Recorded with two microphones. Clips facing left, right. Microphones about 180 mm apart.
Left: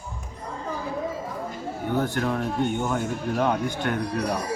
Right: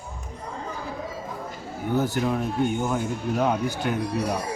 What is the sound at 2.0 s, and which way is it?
Speech, 5° right (ahead or behind).